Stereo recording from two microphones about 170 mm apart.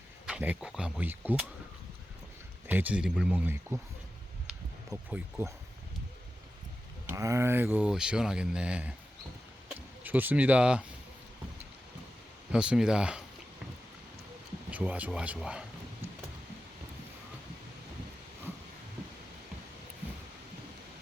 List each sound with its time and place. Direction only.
0.3 s speech: 5° right (ahead or behind)
2.6 s speech: 10° right (ahead or behind)
4.9 s speech: 15° right (ahead or behind)
7.1 s speech: 15° right (ahead or behind)
12.5 s speech: 5° right (ahead or behind)
14.7 s speech: 10° right (ahead or behind)